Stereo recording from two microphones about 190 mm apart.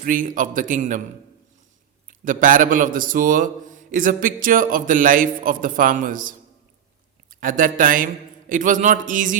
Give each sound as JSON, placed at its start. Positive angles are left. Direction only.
{"t": 0.0, "sound": "a man's voice", "side_deg": -45}
{"t": 2.0, "sound": "a man's voice", "side_deg": -45}